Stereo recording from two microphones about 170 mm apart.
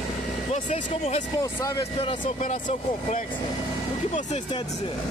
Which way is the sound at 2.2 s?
50° left (ahead or behind).